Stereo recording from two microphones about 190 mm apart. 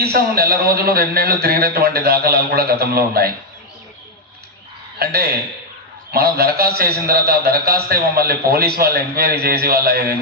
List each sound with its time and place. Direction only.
0.0 s a man's voice: 55° right (ahead or behind)
4.9 s a man's voice: 55° right (ahead or behind)